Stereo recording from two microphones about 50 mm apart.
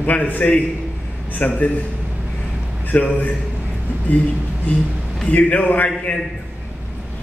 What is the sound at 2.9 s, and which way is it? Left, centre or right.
Speech, left.